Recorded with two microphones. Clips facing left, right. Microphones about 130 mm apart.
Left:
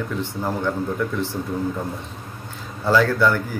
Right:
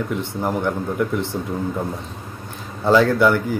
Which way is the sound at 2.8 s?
20° right (ahead or behind).